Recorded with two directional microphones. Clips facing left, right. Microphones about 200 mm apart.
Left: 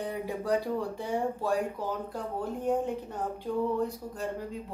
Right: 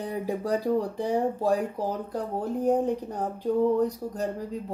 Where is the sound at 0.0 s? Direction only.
35° right (ahead or behind).